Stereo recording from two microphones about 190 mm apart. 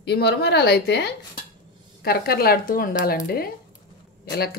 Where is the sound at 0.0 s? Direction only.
60° left (ahead or behind).